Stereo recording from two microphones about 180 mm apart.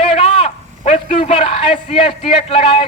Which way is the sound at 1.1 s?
30° left (ahead or behind).